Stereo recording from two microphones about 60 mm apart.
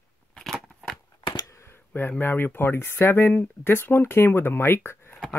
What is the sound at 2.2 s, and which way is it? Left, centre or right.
Speech, left.